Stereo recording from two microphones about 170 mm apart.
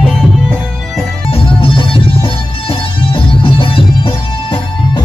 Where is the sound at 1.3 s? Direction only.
30° left (ahead or behind).